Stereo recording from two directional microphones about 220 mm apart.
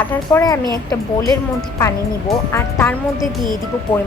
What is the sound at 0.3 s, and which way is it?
Speech, 15° left (ahead or behind).